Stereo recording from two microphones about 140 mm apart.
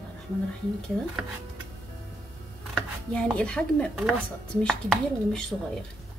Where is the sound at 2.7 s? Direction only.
5° left (ahead or behind).